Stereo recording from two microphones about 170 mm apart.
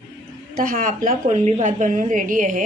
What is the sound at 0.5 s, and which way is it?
A woman's voice, 55° right (ahead or behind).